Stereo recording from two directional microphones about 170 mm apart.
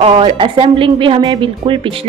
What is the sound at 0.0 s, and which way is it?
Speech, 35° right (ahead or behind).